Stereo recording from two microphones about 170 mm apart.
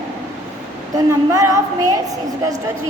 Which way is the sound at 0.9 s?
20° right (ahead or behind).